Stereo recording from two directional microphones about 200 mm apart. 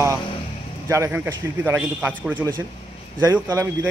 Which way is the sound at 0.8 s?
15° right (ahead or behind).